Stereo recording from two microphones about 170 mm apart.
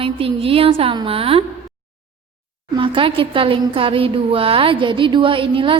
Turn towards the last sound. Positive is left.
turn(degrees=-30)  # may be behind; listen again after turning